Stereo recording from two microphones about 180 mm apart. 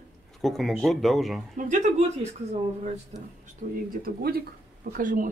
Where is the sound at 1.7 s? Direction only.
40° right (ahead or behind).